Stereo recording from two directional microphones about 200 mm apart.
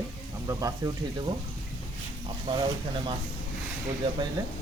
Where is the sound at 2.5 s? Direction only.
25° right (ahead or behind).